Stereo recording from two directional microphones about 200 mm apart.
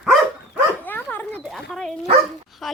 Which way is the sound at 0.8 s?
10° left (ahead or behind).